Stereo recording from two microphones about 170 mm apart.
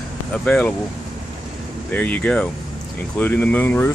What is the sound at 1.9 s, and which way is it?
Speech, 10° left (ahead or behind).